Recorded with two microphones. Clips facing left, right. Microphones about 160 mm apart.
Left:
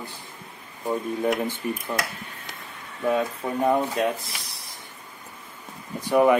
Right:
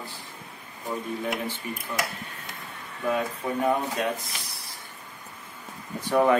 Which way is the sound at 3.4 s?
15° left (ahead or behind).